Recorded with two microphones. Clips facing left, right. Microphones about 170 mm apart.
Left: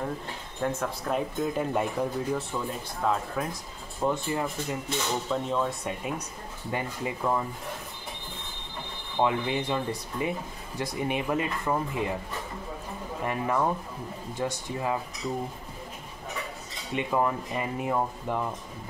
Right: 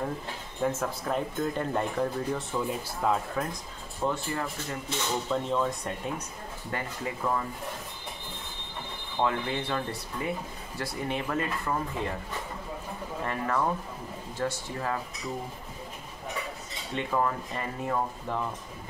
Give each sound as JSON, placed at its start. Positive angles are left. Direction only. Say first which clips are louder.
{"t": 0.6, "sound": "speech", "louder": "right 1 dB", "side_deg": 0}
{"t": 4.0, "sound": "speech", "louder": "left 3 dB", "side_deg": 15}
{"t": 5.3, "sound": "speech", "louder": "right 1 dB", "side_deg": 0}
{"t": 9.2, "sound": "speech", "louder": "left 3 dB", "side_deg": 15}
{"t": 13.2, "sound": "speech", "louder": "left 2 dB", "side_deg": 15}
{"t": 16.9, "sound": "speech", "louder": "left 2 dB", "side_deg": 15}